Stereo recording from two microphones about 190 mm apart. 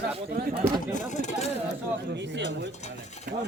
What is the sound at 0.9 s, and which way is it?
Speech, 40° left (ahead or behind).